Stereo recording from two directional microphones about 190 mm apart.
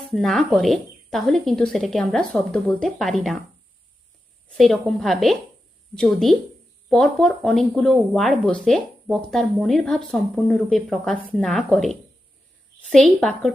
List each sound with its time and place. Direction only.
0.1 s speech: centre (ahead or behind)
4.4 s speech: centre (ahead or behind)